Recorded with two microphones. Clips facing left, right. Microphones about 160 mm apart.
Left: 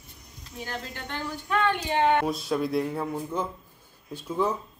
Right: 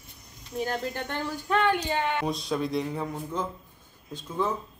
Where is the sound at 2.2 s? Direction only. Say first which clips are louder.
Left 2 dB; 5° left (ahead or behind).